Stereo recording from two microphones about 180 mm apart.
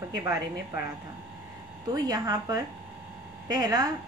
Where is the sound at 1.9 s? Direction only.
20° right (ahead or behind).